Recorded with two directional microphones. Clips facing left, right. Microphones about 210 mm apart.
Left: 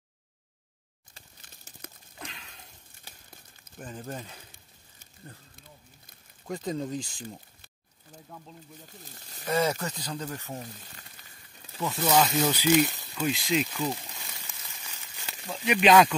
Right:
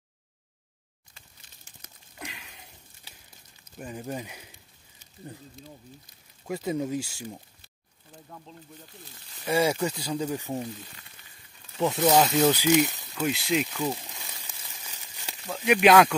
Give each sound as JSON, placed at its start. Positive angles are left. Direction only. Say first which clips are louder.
{"t": 2.1, "sound": "a sound", "louder": "right 4 dB", "side_deg": -5}
{"t": 3.8, "sound": "speech", "louder": "right 3 dB", "side_deg": -10}
{"t": 6.4, "sound": "speech", "louder": "right 3 dB", "side_deg": -10}
{"t": 8.3, "sound": "speech", "louder": "even", "side_deg": 5}
{"t": 9.4, "sound": "speech", "louder": "right 3 dB", "side_deg": -10}
{"t": 11.8, "sound": "speech", "louder": "right 3 dB", "side_deg": -20}
{"t": 13.0, "sound": "speech", "louder": "right 1 dB", "side_deg": 0}